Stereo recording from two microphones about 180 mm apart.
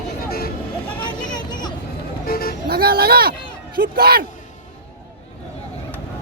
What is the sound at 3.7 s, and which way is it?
Speech, 55° right (ahead or behind).